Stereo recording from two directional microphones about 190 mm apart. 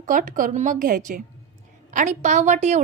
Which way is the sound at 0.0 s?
45° right (ahead or behind).